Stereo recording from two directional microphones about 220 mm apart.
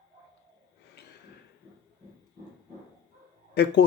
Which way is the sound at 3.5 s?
50° left (ahead or behind).